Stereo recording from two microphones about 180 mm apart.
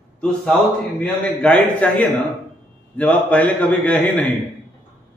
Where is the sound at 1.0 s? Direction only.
5° left (ahead or behind).